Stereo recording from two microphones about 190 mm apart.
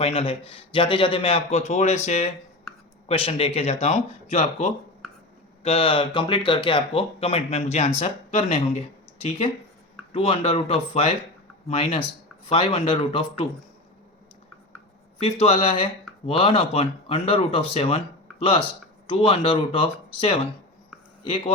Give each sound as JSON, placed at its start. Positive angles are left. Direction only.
{"t": 0.0, "sound": "speech", "side_deg": 30}
{"t": 10.1, "sound": "speech", "side_deg": 30}
{"t": 15.2, "sound": "speech", "side_deg": 30}